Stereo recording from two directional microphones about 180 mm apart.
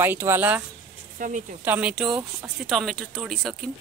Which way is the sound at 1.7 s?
5° right (ahead or behind).